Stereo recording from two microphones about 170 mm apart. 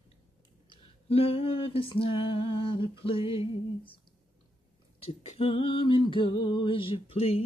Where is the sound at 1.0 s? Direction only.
35° left (ahead or behind).